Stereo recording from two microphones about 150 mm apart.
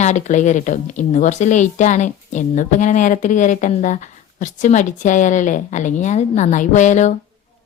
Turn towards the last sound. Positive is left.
turn(degrees=55)  # may be behind; listen again after turning